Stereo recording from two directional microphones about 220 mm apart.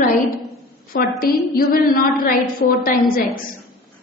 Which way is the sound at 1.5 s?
40° left (ahead or behind).